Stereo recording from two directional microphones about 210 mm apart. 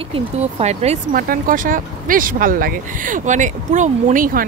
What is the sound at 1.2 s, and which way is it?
Speech, 40° right (ahead or behind).